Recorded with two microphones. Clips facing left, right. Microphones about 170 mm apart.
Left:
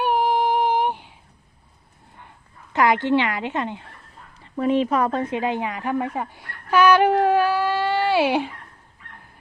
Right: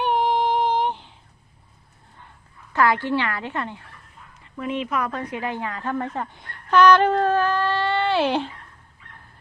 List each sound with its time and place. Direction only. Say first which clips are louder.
0.0 s female singing: left 1 dB; 5° left (ahead or behind)
2.7 s a woman's voice: left 2 dB; 20° left (ahead or behind)
4.4 s a woman's voice: left 7 dB; 35° left (ahead or behind); by 8.5 s 10° left (ahead or behind)